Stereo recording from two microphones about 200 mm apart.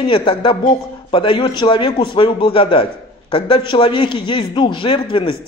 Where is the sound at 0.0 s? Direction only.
25° left (ahead or behind).